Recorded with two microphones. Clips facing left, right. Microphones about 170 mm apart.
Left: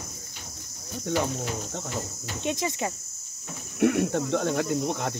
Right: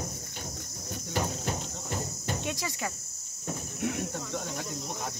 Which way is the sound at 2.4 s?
20° left (ahead or behind).